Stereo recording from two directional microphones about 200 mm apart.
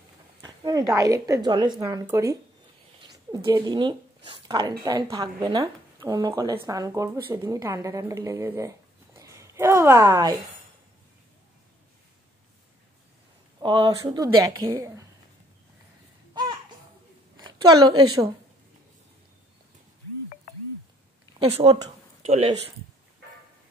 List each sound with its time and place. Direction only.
0.4 s speech: 15° right (ahead or behind)
13.6 s a woman's voice: 25° right (ahead or behind)
16.3 s music: 20° right (ahead or behind)
17.4 s a woman's voice: 20° right (ahead or behind)
21.4 s a woman's voice: 30° right (ahead or behind)